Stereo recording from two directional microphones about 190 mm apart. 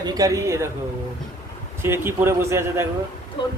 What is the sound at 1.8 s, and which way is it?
Speech, 10° right (ahead or behind).